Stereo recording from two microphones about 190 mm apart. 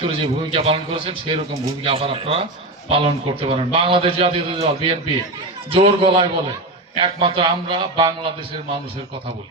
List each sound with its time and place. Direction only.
0.0 s a man's voice: 30° right (ahead or behind)